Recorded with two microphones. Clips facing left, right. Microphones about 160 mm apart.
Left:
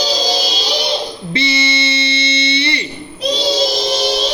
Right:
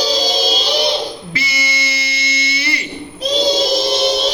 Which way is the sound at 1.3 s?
30° left (ahead or behind).